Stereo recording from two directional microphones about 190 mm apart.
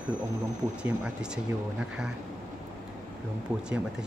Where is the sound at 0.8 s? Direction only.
5° right (ahead or behind).